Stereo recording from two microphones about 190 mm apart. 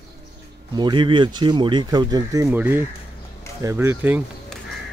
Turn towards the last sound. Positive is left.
turn(degrees=-10)  # may be behind; listen again after turning